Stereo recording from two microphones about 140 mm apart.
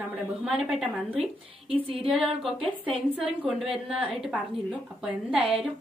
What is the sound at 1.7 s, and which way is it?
Female singing, 40° right (ahead or behind).